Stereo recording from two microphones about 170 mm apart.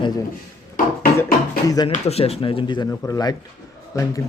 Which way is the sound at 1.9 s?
35° left (ahead or behind).